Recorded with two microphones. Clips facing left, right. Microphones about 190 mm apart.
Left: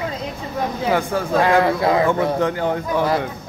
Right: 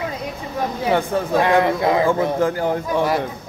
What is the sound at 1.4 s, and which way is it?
A man's voice, 20° right (ahead or behind).